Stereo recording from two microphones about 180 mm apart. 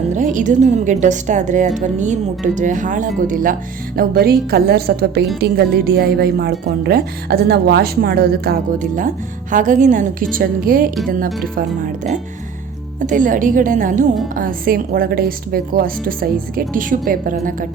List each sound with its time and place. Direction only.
0.1 s a woman's voice: 45° right (ahead or behind)
3.9 s a woman's voice: 60° right (ahead or behind)
13.0 s a woman's voice: 45° right (ahead or behind)